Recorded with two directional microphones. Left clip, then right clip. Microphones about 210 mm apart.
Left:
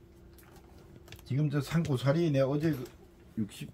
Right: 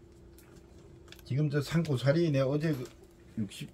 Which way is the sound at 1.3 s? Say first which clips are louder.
Right 1 dB; 5° right (ahead or behind).